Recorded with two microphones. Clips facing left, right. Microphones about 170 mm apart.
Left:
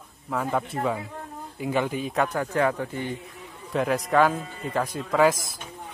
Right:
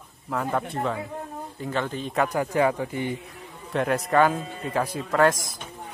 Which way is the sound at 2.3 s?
10° right (ahead or behind).